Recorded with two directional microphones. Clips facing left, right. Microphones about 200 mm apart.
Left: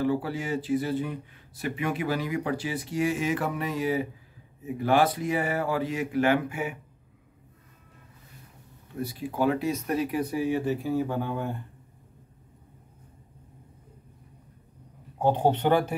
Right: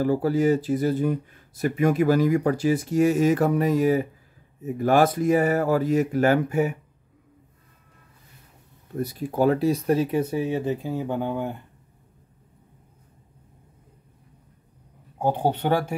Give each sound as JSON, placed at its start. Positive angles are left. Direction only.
{"t": 0.0, "sound": "speech", "side_deg": -40}
{"t": 8.9, "sound": "speech", "side_deg": -40}
{"t": 15.1, "sound": "speech", "side_deg": -10}